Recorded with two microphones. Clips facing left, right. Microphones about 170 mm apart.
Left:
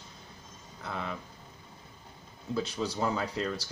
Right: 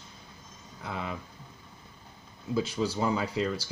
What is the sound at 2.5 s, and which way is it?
Speech, 5° right (ahead or behind).